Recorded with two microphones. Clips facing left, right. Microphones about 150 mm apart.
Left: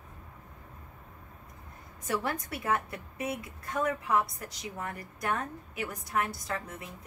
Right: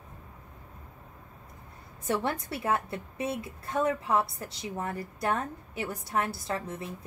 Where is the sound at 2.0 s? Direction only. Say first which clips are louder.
Right 3 dB; 30° right (ahead or behind).